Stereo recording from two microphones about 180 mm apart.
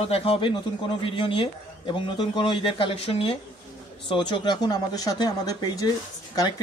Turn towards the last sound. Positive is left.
turn(degrees=25)  # may be behind; listen again after turning